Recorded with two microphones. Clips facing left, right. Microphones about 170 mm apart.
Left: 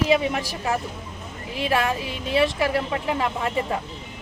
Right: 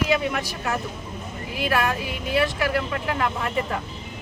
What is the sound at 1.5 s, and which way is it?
A woman's voice, 25° left (ahead or behind).